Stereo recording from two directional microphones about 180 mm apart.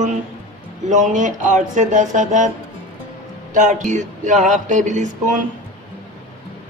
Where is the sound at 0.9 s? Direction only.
45° right (ahead or behind).